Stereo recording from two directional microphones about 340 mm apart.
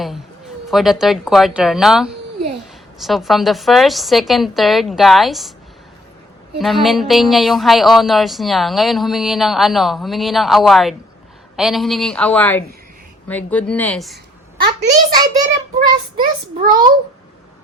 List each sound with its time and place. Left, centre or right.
0.7 s a woman's voice: centre
6.6 s a woman's voice: centre
14.6 s a child's voice: right
16.2 s a child's voice: right